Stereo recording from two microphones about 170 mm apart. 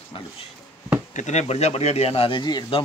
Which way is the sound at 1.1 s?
45° left (ahead or behind).